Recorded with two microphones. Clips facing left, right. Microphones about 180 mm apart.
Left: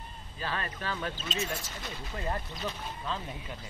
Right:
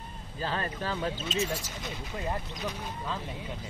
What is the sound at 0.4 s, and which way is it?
Speech, 30° right (ahead or behind).